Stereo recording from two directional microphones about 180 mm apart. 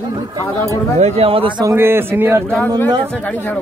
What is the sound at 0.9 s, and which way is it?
Speech, 35° right (ahead or behind).